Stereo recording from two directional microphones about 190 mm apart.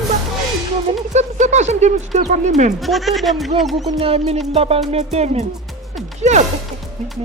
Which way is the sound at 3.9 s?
30° right (ahead or behind).